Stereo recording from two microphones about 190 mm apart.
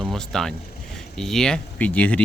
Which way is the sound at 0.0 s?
Centre (ahead or behind).